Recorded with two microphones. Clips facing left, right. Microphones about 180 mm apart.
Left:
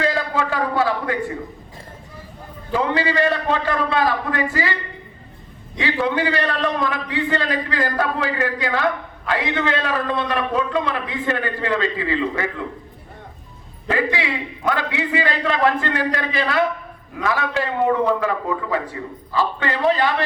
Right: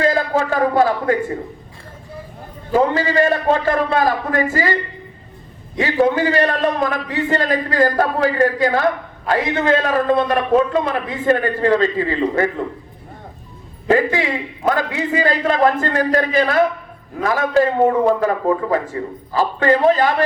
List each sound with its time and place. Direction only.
0.0 s a man's voice: 45° right (ahead or behind)
2.7 s a man's voice: 45° right (ahead or behind)
13.9 s a man's voice: 45° right (ahead or behind)